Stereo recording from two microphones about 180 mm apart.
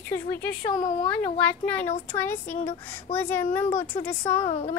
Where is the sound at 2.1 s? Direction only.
15° left (ahead or behind).